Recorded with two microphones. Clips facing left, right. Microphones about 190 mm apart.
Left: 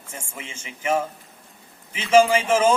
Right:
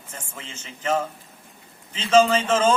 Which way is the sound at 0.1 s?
10° left (ahead or behind).